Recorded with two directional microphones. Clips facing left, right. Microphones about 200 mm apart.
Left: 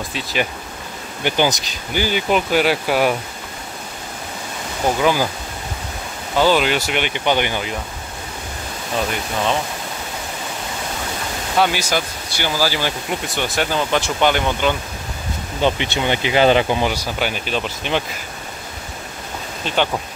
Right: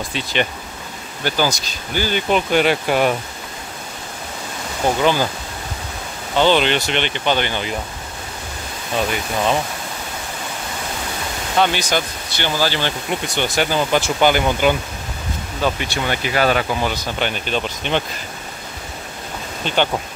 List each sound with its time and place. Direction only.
0.1 s speech: 5° left (ahead or behind)
1.2 s speech: 20° left (ahead or behind)
5.0 s speech: 5° left (ahead or behind)
6.3 s speech: 5° left (ahead or behind)
11.5 s speech: 5° left (ahead or behind)
15.6 s speech: 20° left (ahead or behind); by 18.0 s 5° left (ahead or behind)
19.6 s speech: centre (ahead or behind)